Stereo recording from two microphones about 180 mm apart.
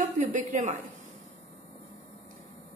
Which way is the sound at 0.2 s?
45° right (ahead or behind).